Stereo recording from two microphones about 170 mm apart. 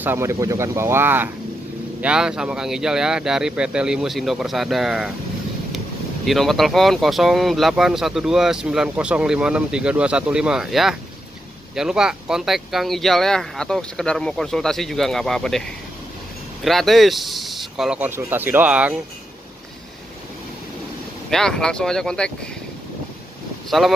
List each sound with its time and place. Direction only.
0.0 s speech: 15° right (ahead or behind)
6.2 s speech: centre (ahead or behind)
21.3 s speech: 5° left (ahead or behind)
23.7 s speech: centre (ahead or behind)